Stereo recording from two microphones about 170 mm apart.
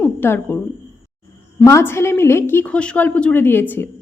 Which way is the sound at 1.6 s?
15° left (ahead or behind).